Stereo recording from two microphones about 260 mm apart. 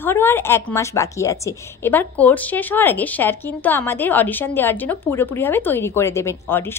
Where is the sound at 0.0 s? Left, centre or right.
Centre.